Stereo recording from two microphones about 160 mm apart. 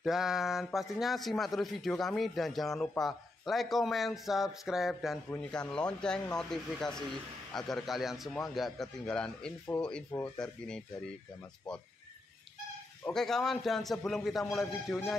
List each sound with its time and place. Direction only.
0.0 s speech: 5° right (ahead or behind)
13.0 s speech: 5° left (ahead or behind)